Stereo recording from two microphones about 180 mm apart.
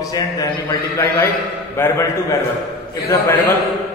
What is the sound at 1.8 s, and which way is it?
Mantra, 15° left (ahead or behind).